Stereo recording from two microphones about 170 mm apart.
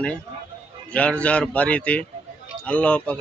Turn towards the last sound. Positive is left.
turn(degrees=5)  # may be behind; listen again after turning